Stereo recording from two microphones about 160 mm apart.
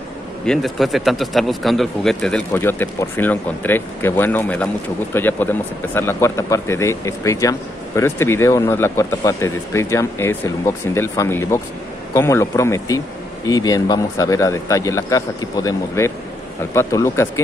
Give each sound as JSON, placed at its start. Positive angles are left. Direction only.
{"t": 0.5, "sound": "speech", "side_deg": 0}
{"t": 2.5, "sound": "speech", "side_deg": 15}